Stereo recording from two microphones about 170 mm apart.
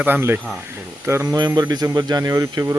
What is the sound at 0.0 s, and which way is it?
Speech, 10° right (ahead or behind).